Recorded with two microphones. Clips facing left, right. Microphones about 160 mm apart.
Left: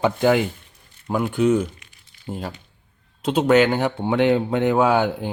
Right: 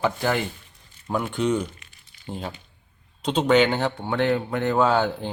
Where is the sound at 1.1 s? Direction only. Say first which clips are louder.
Left 5 dB; 5° left (ahead or behind).